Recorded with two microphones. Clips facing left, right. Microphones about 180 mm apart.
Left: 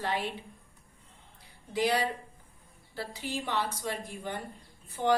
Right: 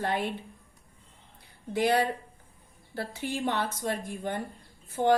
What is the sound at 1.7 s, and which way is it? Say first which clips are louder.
A woman's voice: right 3 dB; 55° right (ahead or behind).